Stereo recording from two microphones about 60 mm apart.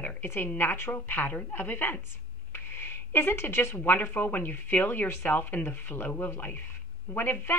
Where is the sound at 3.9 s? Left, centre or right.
Left.